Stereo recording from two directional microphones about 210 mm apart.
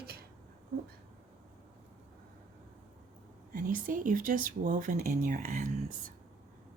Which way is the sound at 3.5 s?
40° right (ahead or behind).